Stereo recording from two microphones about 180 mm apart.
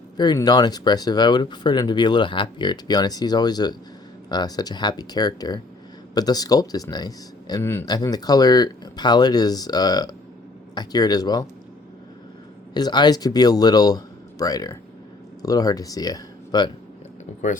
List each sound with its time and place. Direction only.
0.2 s speech: 20° left (ahead or behind)
12.7 s speech: 25° left (ahead or behind)